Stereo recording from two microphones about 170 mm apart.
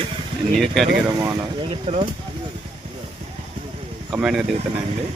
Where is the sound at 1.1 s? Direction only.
20° right (ahead or behind).